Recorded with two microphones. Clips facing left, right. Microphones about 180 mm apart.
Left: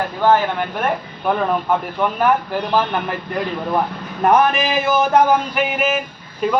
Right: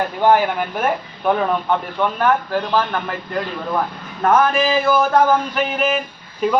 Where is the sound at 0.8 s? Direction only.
Centre (ahead or behind).